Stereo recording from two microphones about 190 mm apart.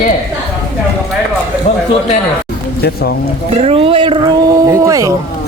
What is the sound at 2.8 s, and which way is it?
Speech, 55° left (ahead or behind).